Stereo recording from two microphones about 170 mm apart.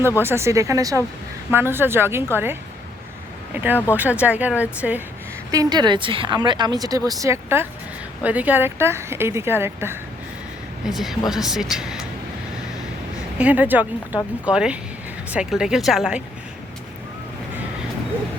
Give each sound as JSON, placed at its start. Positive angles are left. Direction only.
{"t": 0.2, "sound": "speech", "side_deg": -15}
{"t": 5.5, "sound": "speech", "side_deg": -20}
{"t": 10.8, "sound": "speech", "side_deg": 0}
{"t": 13.4, "sound": "speech", "side_deg": -10}